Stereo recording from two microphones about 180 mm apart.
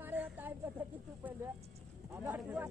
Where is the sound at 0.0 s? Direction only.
10° right (ahead or behind).